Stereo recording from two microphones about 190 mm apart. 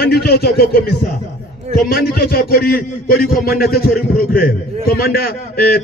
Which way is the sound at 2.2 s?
50° left (ahead or behind).